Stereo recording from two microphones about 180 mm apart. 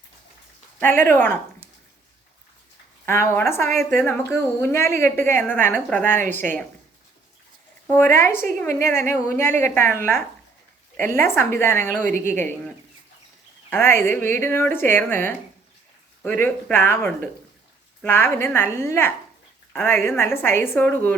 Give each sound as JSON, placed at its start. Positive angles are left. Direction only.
{"t": 0.8, "sound": "a woman's voice", "side_deg": 10}
{"t": 3.1, "sound": "a woman's voice", "side_deg": 15}
{"t": 7.9, "sound": "a woman's voice", "side_deg": 15}